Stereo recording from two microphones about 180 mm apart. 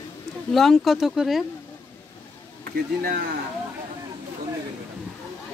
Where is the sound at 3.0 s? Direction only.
55° right (ahead or behind).